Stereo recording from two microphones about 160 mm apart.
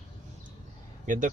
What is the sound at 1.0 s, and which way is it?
Speech, 55° right (ahead or behind).